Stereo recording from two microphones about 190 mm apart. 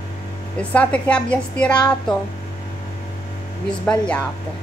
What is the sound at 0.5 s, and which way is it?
A woman's voice, 5° left (ahead or behind).